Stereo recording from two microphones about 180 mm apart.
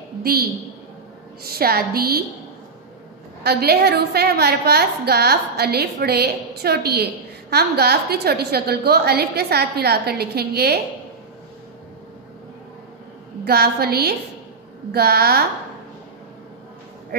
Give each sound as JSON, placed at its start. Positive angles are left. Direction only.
{"t": 0.2, "sound": "a woman's voice", "side_deg": -60}
{"t": 3.4, "sound": "a woman's voice", "side_deg": -65}
{"t": 13.5, "sound": "a woman's voice", "side_deg": -60}